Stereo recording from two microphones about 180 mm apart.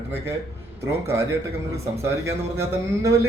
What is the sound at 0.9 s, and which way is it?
Speech, 15° right (ahead or behind).